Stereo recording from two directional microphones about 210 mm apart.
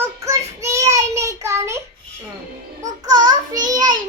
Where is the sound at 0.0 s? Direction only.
15° right (ahead or behind).